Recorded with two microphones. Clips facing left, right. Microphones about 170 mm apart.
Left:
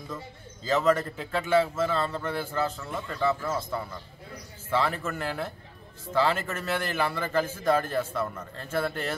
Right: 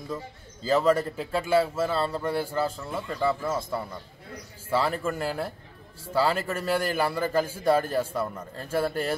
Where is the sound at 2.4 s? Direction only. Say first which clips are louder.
Right 2 dB; 10° right (ahead or behind).